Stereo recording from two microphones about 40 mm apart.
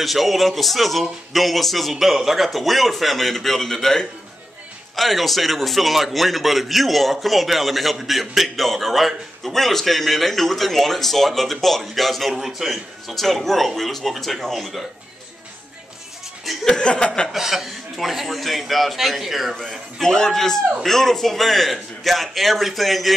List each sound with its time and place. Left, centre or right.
0.0 s a man's voice: centre
16.6 s speech: centre
17.3 s a man's voice: centre